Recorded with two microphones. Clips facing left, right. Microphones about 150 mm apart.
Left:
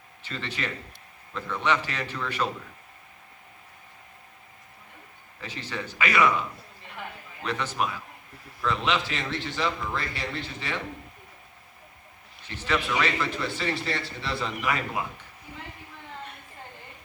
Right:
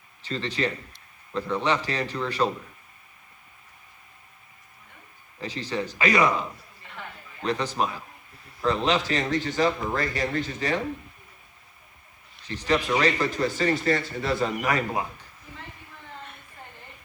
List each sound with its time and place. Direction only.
0.2 s a man's voice: 35° right (ahead or behind)
5.4 s a man's voice: 35° right (ahead or behind)
7.4 s a man's voice: 35° right (ahead or behind)
12.5 s speech: 35° right (ahead or behind)